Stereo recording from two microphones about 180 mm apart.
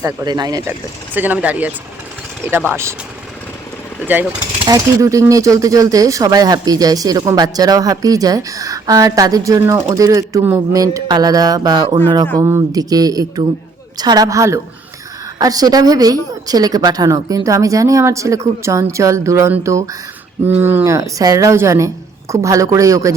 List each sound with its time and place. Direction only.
0.0 s speech: 20° right (ahead or behind)
0.7 s a woman's voice: 10° right (ahead or behind)
4.0 s a woman's voice: 10° right (ahead or behind)